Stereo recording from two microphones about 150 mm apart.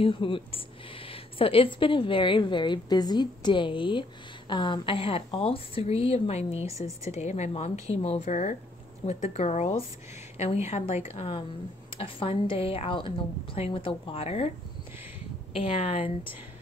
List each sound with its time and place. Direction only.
0.0 s a woman's voice: 35° left (ahead or behind)
11.1 s a woman's voice: 35° left (ahead or behind)
15.5 s a woman's voice: 40° left (ahead or behind)